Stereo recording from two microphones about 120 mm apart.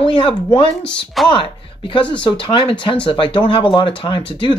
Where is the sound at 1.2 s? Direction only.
Centre (ahead or behind).